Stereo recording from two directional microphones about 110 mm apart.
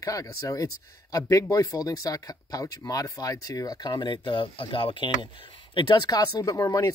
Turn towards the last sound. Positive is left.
turn(degrees=30)  # may be behind; listen again after turning